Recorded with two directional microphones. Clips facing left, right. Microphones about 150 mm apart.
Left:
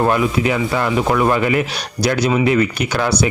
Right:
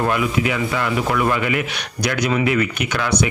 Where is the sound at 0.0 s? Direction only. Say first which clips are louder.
Left 3 dB; 35° left (ahead or behind).